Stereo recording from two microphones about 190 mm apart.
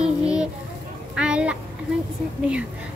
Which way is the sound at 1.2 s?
5° right (ahead or behind).